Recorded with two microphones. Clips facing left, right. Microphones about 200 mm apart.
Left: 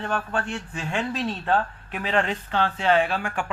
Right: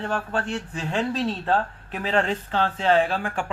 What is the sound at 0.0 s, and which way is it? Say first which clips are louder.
A woman's voice: right 1 dB; 35° right (ahead or behind).